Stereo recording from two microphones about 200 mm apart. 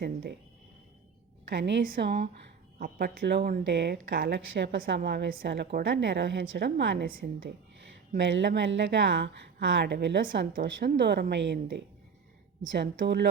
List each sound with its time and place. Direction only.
0.0 s speech: 55° right (ahead or behind)
1.5 s speech: 60° right (ahead or behind)
1.8 s a woman's voice: 50° right (ahead or behind)
8.3 s speech: 60° right (ahead or behind)